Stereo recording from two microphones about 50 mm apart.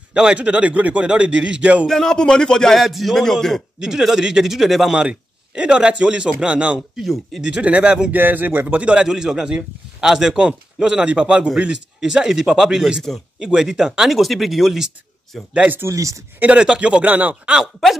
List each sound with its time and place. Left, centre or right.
0.1 s a man's voice: centre
1.9 s speech: centre
2.7 s speech: centre
3.8 s a man's voice: centre
4.9 s a man's voice: centre
7.0 s speech: centre
7.4 s a man's voice: centre
8.1 s speech: right
8.9 s a man's voice: centre
15.9 s speech: right
16.3 s a man's voice: right